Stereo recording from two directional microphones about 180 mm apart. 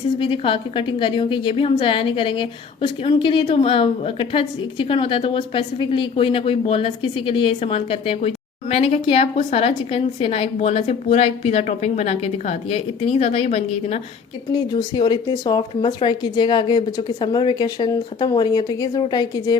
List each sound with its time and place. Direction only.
0.2 s a woman's voice: 30° left (ahead or behind)
14.5 s a woman's voice: 25° left (ahead or behind)